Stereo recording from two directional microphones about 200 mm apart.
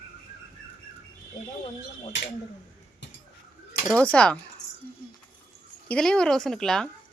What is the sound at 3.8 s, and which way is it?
Speech, 5° left (ahead or behind).